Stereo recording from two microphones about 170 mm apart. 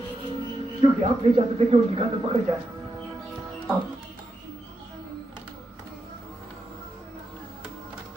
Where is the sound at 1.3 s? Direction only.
30° right (ahead or behind).